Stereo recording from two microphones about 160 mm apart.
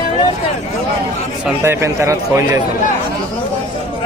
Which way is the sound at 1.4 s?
15° right (ahead or behind).